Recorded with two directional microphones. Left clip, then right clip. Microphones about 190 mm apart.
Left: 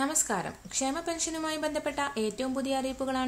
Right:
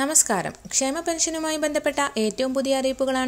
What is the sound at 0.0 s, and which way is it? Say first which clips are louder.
A woman's voice: right 7 dB; 35° right (ahead or behind).